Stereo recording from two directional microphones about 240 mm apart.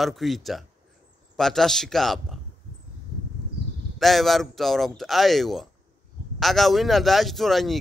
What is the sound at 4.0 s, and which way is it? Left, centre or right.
A man's voice, centre.